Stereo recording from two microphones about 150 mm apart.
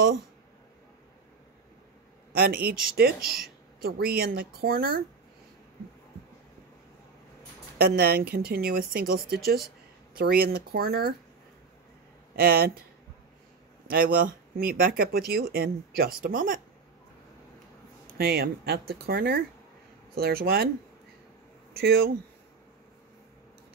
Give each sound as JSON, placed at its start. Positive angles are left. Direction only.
{"t": 2.3, "sound": "speech", "side_deg": -90}
{"t": 7.8, "sound": "speech", "side_deg": -90}
{"t": 12.4, "sound": "speech", "side_deg": -85}
{"t": 13.8, "sound": "speech", "side_deg": -75}
{"t": 16.0, "sound": "speech", "side_deg": -70}
{"t": 18.1, "sound": "speech", "side_deg": -90}
{"t": 21.7, "sound": "speech", "side_deg": -90}